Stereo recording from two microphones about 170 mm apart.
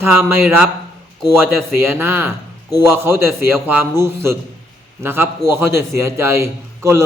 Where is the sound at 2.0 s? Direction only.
15° right (ahead or behind).